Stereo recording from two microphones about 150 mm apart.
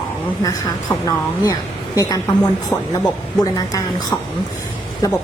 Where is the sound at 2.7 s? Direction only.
15° left (ahead or behind).